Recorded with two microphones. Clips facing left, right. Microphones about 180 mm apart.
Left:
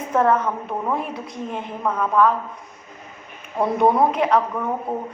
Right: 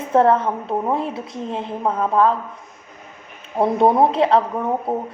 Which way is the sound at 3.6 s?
30° right (ahead or behind).